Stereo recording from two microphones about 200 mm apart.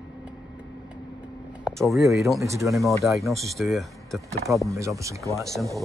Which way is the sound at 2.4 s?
15° right (ahead or behind).